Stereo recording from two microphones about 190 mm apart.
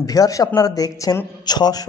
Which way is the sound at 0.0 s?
20° left (ahead or behind).